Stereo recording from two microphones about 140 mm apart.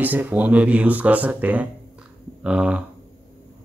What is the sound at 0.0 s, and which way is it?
Speech, 10° right (ahead or behind).